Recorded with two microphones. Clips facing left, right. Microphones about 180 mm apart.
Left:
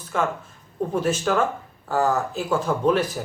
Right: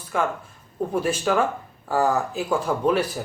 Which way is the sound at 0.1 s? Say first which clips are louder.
Even; 5° right (ahead or behind).